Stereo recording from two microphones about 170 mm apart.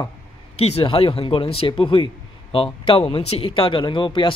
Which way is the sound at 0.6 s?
35° left (ahead or behind).